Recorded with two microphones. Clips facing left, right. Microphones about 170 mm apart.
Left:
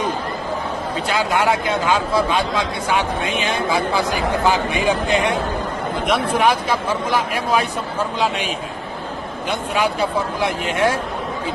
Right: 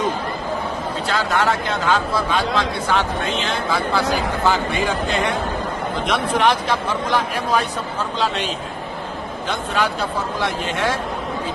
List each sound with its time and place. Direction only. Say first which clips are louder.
1.0 s a man's voice: left 1 dB; 10° left (ahead or behind)
9.5 s a man's voice: left 2 dB; 10° left (ahead or behind)